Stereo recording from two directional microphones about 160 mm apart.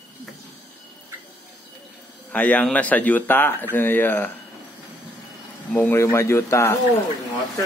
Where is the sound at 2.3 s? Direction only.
10° left (ahead or behind).